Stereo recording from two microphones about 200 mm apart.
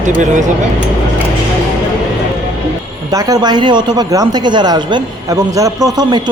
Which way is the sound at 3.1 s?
20° right (ahead or behind).